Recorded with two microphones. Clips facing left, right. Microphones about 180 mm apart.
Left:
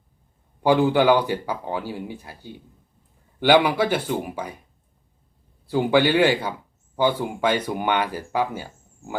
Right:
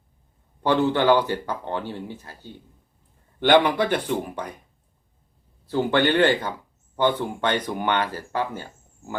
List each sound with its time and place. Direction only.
0.6 s speech: 10° left (ahead or behind)
5.6 s speech: 10° left (ahead or behind)